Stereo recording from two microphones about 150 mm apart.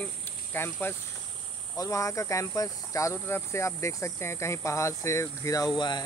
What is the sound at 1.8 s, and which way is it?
Speech, 20° left (ahead or behind).